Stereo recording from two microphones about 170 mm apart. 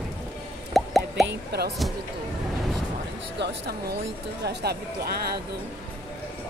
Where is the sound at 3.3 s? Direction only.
90° right.